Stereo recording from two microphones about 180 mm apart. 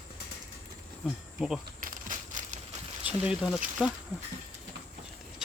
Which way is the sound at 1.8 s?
50° right (ahead or behind).